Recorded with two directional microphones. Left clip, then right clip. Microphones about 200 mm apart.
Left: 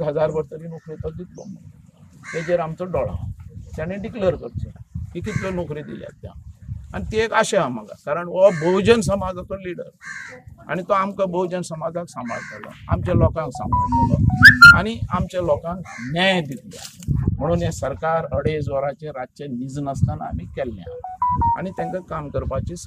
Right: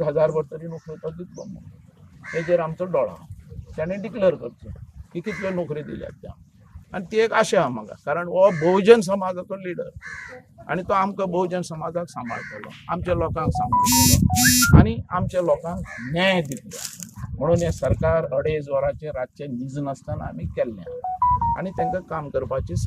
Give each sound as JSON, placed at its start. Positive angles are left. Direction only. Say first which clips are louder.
{"t": 0.0, "sound": "speech", "louder": "right 1 dB", "side_deg": 5}
{"t": 2.5, "sound": "speech", "louder": "right 1 dB", "side_deg": 5}
{"t": 16.4, "sound": "speech", "louder": "right 1 dB", "side_deg": -45}
{"t": 17.4, "sound": "speech", "louder": "right 2 dB", "side_deg": 5}